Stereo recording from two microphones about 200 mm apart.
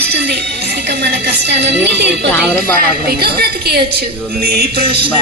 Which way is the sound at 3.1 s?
50° right (ahead or behind).